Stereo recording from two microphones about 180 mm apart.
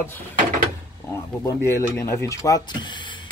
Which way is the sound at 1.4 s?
15° left (ahead or behind).